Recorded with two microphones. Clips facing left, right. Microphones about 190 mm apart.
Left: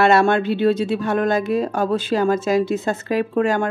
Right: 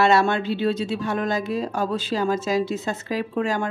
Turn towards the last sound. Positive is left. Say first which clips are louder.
# left 5 dB
turn(degrees=55)  # may be behind; listen again after turning